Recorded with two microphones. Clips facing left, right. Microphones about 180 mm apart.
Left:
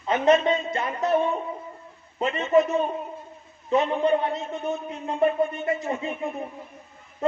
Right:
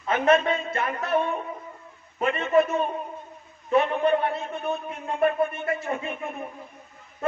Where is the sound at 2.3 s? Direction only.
20° left (ahead or behind).